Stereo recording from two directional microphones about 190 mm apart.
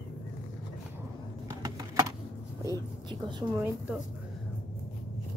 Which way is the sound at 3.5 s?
10° right (ahead or behind).